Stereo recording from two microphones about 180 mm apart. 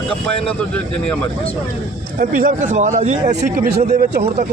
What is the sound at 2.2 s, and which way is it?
Speech, 50° right (ahead or behind).